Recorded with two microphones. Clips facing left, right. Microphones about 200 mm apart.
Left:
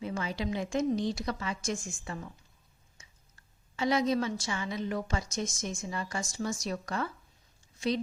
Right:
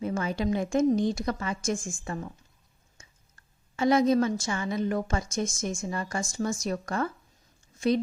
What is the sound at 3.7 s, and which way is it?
A woman's voice, 50° right (ahead or behind).